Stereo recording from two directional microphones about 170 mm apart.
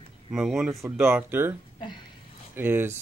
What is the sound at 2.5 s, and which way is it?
Speech, 15° right (ahead or behind).